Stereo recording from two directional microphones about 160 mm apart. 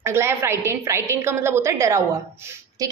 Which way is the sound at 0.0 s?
15° right (ahead or behind).